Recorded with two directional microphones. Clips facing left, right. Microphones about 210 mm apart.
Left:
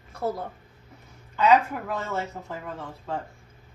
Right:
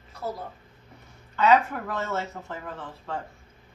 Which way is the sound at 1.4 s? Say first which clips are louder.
Left 1 dB; 10° left (ahead or behind).